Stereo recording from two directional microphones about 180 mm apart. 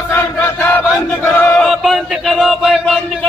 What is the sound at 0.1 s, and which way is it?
Chant, 15° left (ahead or behind).